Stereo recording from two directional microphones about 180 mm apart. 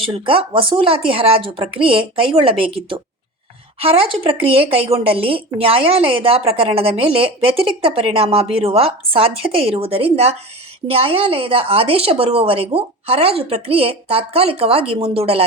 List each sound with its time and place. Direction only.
0.0 s a woman's voice: 30° right (ahead or behind)